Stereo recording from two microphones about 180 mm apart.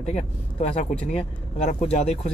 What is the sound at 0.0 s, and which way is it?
Speech, 40° left (ahead or behind).